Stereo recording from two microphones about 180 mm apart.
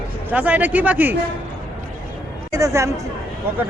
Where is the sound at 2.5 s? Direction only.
15° right (ahead or behind).